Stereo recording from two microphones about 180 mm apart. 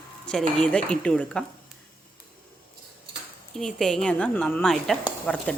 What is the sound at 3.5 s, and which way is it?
Speech, centre (ahead or behind).